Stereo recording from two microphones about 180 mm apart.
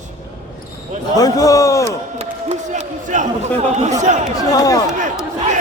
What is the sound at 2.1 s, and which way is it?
A man's voice, 35° right (ahead or behind).